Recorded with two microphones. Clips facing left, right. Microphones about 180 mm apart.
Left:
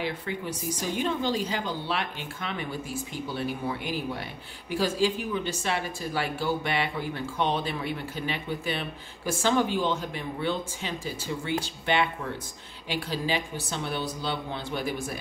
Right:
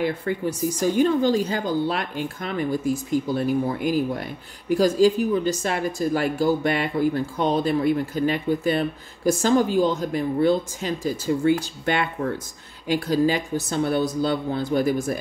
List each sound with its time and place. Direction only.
0.0 s a woman's voice: 45° right (ahead or behind)